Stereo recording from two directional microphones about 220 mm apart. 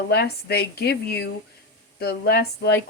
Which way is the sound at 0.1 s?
45° left (ahead or behind).